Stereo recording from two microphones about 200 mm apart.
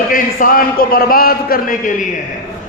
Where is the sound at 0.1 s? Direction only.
45° left (ahead or behind).